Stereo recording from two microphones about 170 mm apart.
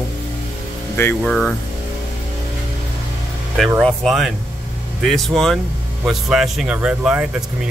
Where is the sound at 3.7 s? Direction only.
Centre (ahead or behind).